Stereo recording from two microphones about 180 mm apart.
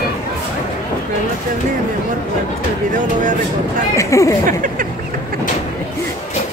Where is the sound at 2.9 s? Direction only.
45° right (ahead or behind).